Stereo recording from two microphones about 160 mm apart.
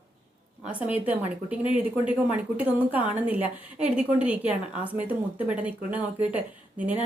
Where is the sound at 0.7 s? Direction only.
10° right (ahead or behind).